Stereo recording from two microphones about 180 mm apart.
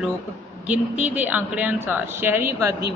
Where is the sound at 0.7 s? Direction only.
10° right (ahead or behind).